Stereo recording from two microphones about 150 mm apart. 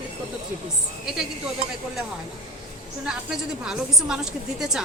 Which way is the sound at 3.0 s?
5° right (ahead or behind).